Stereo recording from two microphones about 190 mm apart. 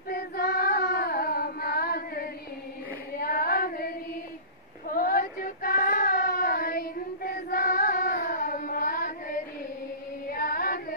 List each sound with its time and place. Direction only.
0.1 s female singing: 50° left (ahead or behind)
4.8 s child singing: 50° left (ahead or behind)
10.2 s female singing: 50° left (ahead or behind)